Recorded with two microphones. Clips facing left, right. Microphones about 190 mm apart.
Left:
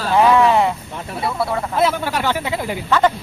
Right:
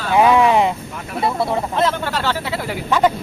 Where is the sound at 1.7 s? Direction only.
10° left (ahead or behind).